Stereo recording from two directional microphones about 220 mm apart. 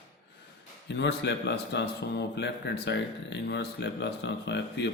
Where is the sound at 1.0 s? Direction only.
50° left (ahead or behind).